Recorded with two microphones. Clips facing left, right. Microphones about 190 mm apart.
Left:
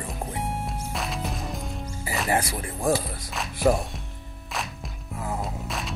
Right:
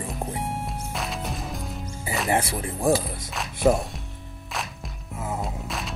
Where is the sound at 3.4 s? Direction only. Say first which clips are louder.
Right 1 dB; centre (ahead or behind).